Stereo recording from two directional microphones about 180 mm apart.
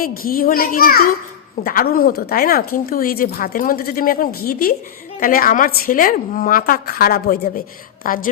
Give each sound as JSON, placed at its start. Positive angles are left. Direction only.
{"t": 0.0, "sound": "speech", "side_deg": 55}